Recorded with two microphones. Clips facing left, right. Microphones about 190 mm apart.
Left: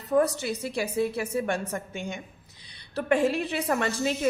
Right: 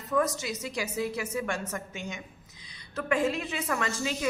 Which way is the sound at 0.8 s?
30° left (ahead or behind).